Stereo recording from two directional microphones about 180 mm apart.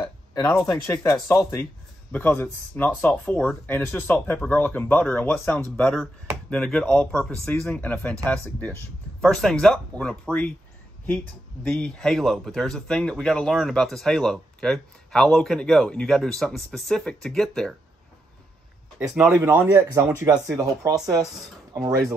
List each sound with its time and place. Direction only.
0.3 s speech: 15° left (ahead or behind)
11.6 s speech: 5° left (ahead or behind)
19.1 s speech: 5° right (ahead or behind)
19.4 s speech: 15° right (ahead or behind)